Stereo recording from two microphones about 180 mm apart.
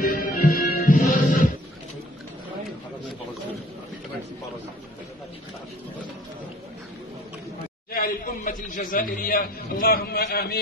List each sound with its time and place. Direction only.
0.1 s music: 50° left (ahead or behind)
7.9 s a man's voice: 55° left (ahead or behind)